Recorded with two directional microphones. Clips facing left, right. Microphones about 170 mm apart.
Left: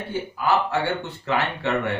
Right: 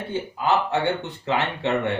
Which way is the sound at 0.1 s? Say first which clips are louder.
Even; 20° right (ahead or behind).